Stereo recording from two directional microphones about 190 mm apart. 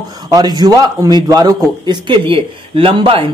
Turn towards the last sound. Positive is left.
turn(degrees=-30)  # may be behind; listen again after turning